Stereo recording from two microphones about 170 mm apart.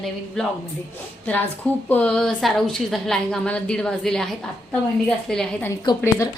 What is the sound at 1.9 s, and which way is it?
A woman's voice, 5° left (ahead or behind).